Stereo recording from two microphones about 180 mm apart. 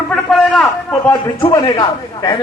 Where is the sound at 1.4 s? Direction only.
25° left (ahead or behind).